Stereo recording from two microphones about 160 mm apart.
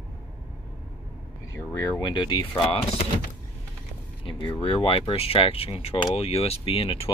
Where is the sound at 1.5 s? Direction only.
20° left (ahead or behind).